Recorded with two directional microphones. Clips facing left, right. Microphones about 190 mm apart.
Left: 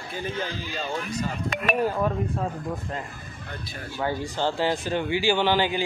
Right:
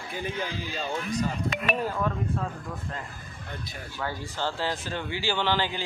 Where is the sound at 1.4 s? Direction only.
45° left (ahead or behind).